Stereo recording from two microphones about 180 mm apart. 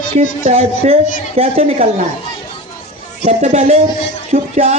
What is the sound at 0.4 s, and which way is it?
Speech, 35° right (ahead or behind).